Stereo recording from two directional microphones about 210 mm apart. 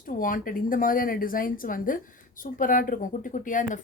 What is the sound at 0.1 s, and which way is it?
Speech, 40° left (ahead or behind).